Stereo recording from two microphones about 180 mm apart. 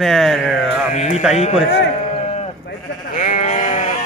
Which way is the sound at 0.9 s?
40° left (ahead or behind).